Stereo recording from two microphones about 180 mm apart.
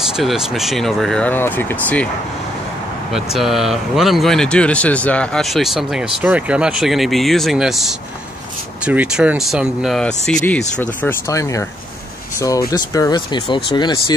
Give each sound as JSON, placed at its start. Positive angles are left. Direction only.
{"t": 0.2, "sound": "speech", "side_deg": 0}
{"t": 3.1, "sound": "speech", "side_deg": 0}